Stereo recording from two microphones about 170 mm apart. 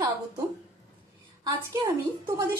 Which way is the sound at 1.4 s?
20° right (ahead or behind).